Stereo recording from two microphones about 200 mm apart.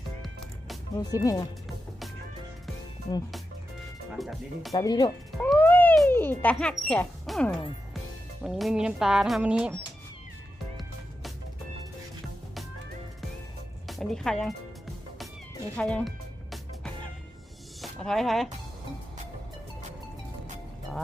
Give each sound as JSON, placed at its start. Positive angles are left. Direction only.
{"t": 0.9, "sound": "speech", "side_deg": 15}
{"t": 4.7, "sound": "speech", "side_deg": 20}
{"t": 5.4, "sound": "speech", "side_deg": 10}
{"t": 13.8, "sound": "speech", "side_deg": 0}
{"t": 15.8, "sound": "music", "side_deg": 5}